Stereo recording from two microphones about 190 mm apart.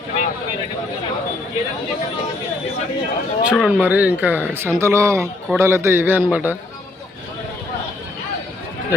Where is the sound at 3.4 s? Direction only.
5° right (ahead or behind).